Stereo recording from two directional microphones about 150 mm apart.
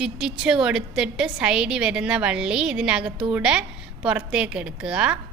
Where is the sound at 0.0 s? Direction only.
5° right (ahead or behind).